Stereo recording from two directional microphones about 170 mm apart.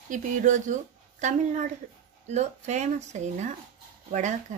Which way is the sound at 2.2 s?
40° right (ahead or behind).